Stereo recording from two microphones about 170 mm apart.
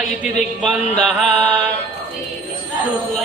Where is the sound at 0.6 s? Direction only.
Centre (ahead or behind).